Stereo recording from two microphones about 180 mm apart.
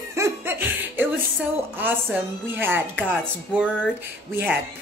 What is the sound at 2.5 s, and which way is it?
Speech, 10° right (ahead or behind).